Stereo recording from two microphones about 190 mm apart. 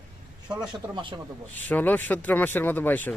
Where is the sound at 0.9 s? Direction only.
25° right (ahead or behind).